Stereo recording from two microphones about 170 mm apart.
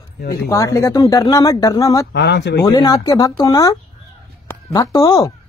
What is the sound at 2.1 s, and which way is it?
Speech, 90° left.